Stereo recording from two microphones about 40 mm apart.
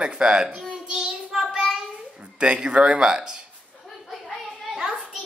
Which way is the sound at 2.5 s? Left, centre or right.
Right.